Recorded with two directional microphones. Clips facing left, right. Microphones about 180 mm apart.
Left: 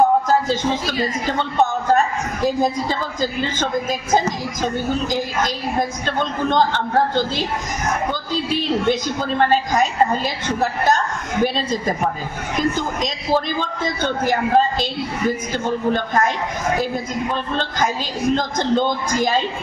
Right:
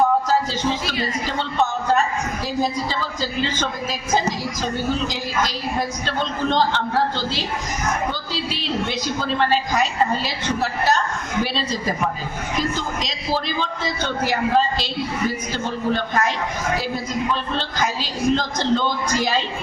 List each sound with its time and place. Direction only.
0.3 s a woman's voice: 50° left (ahead or behind)
15.9 s a woman's voice: 50° left (ahead or behind)